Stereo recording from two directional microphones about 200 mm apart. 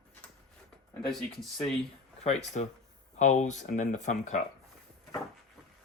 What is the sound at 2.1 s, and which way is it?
Speech, 35° left (ahead or behind).